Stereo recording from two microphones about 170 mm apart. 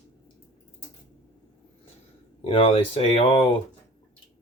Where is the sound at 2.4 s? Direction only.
35° left (ahead or behind).